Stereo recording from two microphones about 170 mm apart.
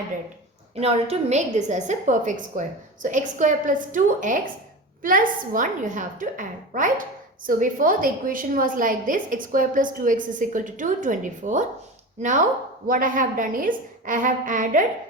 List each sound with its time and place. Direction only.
0.8 s a woman's voice: 40° right (ahead or behind)